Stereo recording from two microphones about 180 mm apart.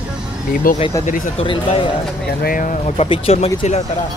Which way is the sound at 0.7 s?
50° left (ahead or behind).